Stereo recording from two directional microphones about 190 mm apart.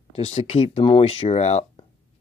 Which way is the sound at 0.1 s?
30° left (ahead or behind).